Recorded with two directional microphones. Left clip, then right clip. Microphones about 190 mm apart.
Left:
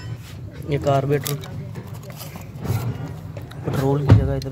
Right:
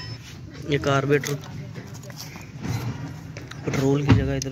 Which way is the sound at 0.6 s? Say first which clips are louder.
Left 2 dB; centre (ahead or behind).